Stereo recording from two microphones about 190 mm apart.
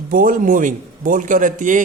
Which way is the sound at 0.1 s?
45° right (ahead or behind).